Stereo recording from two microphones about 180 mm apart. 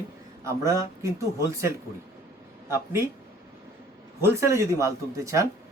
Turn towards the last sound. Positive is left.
turn(degrees=-15)  # may be behind; listen again after turning